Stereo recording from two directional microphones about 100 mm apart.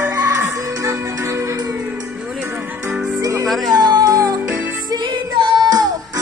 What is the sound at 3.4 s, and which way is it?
Music, centre (ahead or behind).